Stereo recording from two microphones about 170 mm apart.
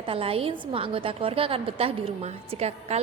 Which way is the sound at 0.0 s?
35° right (ahead or behind).